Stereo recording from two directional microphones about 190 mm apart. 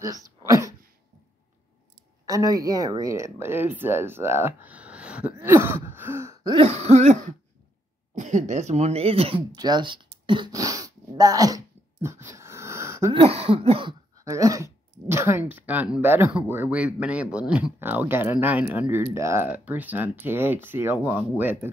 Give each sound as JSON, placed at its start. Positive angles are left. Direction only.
{"t": 0.0, "sound": "a sound", "side_deg": -15}
{"t": 2.2, "sound": "speech", "side_deg": -20}
{"t": 5.4, "sound": "throat clearing", "side_deg": -10}
{"t": 8.1, "sound": "speech", "side_deg": -40}
{"t": 10.2, "sound": "throat clearing", "side_deg": -25}
{"t": 13.1, "sound": "speech", "side_deg": -30}
{"t": 14.2, "sound": "speech", "side_deg": -15}